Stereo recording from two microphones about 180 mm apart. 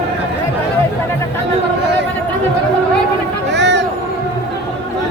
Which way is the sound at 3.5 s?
75° right (ahead or behind).